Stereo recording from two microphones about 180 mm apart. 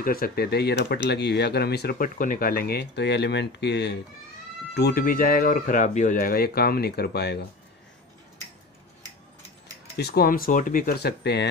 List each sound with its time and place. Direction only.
0.0 s speech: 55° left (ahead or behind)
9.9 s speech: 60° left (ahead or behind)